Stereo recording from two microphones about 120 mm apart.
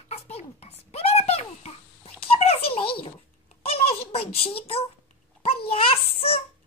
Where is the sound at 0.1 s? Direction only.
60° left (ahead or behind).